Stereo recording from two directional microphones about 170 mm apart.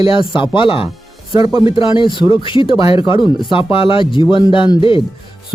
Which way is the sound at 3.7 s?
30° left (ahead or behind).